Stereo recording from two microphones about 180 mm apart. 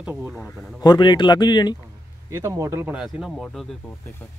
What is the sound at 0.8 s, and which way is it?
Speech, 25° left (ahead or behind).